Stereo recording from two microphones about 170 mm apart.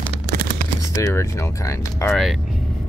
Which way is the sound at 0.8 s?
15° left (ahead or behind).